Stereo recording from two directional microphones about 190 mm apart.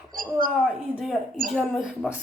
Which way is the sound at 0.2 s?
45° right (ahead or behind).